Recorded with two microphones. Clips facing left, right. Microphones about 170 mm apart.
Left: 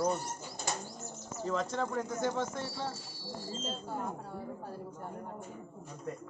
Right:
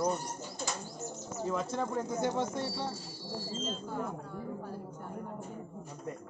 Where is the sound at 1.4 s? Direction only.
10° right (ahead or behind).